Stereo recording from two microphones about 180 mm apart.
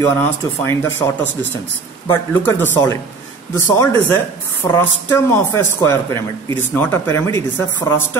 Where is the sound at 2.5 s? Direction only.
15° left (ahead or behind).